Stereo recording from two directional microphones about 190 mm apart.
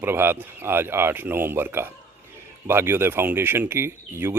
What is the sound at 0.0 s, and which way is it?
Speech, 10° right (ahead or behind).